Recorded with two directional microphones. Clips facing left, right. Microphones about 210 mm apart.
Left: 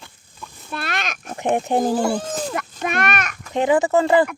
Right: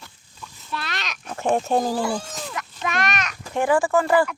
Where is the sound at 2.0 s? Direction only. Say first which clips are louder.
Left 5 dB; 55° left (ahead or behind).